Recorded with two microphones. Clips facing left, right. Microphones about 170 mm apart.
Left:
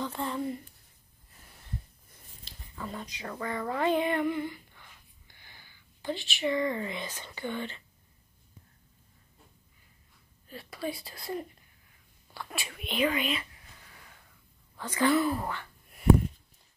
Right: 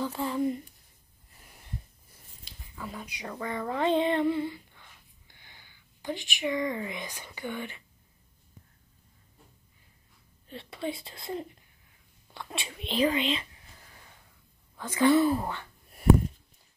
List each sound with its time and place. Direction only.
0.0 s a sound: 5° right (ahead or behind)
2.7 s female singing: 5° right (ahead or behind); by 4.8 s 25° right (ahead or behind)
5.3 s speech: 20° right (ahead or behind)
10.5 s female singing: 25° right (ahead or behind)
14.8 s female singing: 15° right (ahead or behind)